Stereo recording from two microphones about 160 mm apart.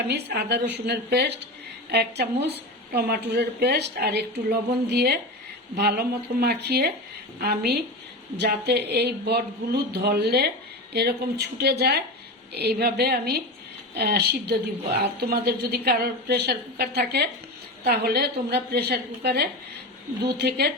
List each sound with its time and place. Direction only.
0.1 s speech: 90° right
3.2 s a woman's voice: 90° right
17.8 s a woman's voice: 75° right (ahead or behind)